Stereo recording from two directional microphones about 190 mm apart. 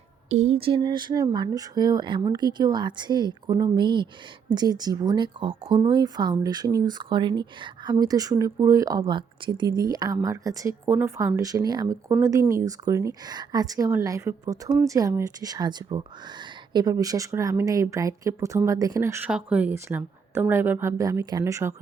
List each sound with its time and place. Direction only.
0.3 s speech: 35° right (ahead or behind); by 21.8 s 15° right (ahead or behind)